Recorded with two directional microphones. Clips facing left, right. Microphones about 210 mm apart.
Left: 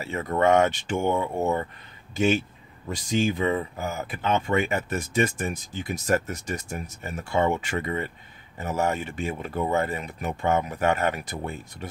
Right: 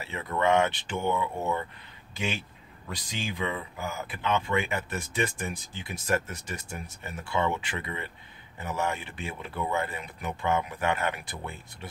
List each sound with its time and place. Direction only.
0.0 s speech: 45° left (ahead or behind)